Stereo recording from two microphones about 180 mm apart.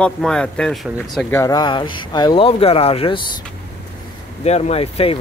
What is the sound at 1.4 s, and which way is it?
Speech, 20° left (ahead or behind).